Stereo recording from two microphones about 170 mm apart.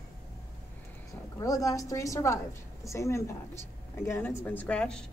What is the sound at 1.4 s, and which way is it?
A woman's voice, 20° left (ahead or behind).